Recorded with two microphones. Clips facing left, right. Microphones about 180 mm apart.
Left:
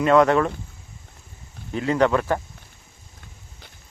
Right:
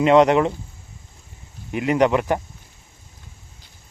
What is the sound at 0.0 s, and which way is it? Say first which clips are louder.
Speech: right 2 dB; 20° right (ahead or behind).